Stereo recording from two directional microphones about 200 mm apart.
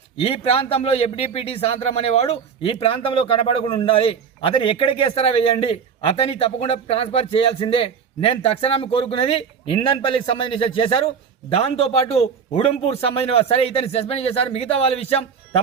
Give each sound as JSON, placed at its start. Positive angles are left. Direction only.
{"t": 0.2, "sound": "speech", "side_deg": 30}